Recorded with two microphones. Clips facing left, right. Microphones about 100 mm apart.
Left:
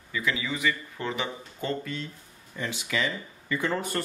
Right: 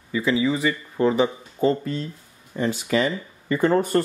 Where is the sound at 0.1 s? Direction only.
30° right (ahead or behind).